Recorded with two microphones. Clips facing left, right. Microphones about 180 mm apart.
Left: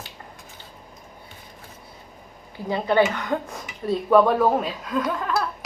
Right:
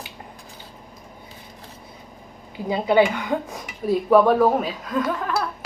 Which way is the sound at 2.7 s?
15° right (ahead or behind).